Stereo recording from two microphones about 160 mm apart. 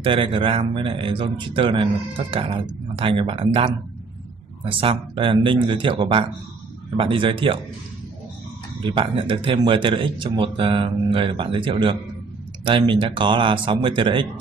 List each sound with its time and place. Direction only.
0.0 s speech: 35° right (ahead or behind)
8.8 s speech: 35° right (ahead or behind)